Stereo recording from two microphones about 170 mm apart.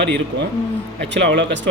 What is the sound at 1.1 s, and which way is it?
Speech, 90° right.